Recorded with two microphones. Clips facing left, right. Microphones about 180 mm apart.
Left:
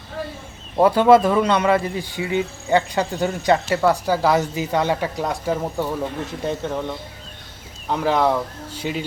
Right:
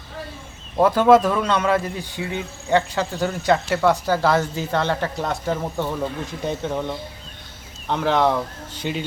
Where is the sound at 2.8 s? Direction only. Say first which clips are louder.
Left 1 dB; 15° left (ahead or behind).